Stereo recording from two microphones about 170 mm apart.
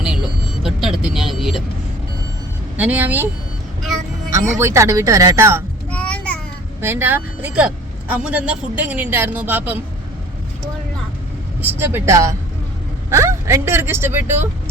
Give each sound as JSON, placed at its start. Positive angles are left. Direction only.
{"t": 0.0, "sound": "vehicle", "side_deg": -5}
{"t": 2.7, "sound": "speech", "side_deg": -10}
{"t": 4.3, "sound": "speech", "side_deg": -15}
{"t": 5.9, "sound": "a sound", "side_deg": 5}
{"t": 6.8, "sound": "speech", "side_deg": -15}
{"t": 11.6, "sound": "speech", "side_deg": -15}